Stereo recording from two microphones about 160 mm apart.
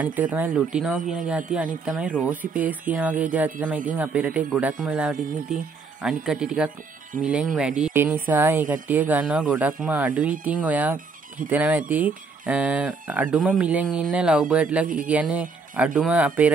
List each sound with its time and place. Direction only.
0.0 s speech: 10° right (ahead or behind)